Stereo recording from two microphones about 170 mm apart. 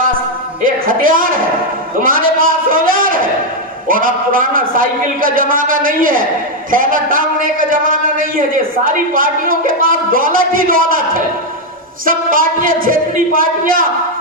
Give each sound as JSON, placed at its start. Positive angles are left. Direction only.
{"t": 0.6, "sound": "a man's voice", "side_deg": -55}